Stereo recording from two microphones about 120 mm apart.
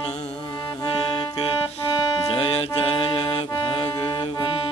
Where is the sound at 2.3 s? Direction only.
50° left (ahead or behind).